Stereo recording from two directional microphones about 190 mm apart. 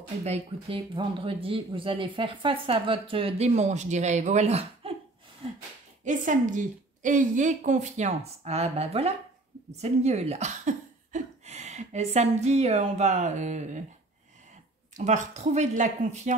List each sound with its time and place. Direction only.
0.2 s speech: 30° right (ahead or behind)
6.0 s a woman's voice: 45° right (ahead or behind)
15.0 s a woman's voice: 40° right (ahead or behind)